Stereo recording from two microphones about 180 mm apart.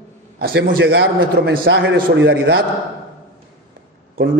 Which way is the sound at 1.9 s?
65° right (ahead or behind).